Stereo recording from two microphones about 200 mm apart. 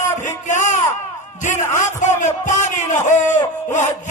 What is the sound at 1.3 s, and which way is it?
Speech, 40° left (ahead or behind).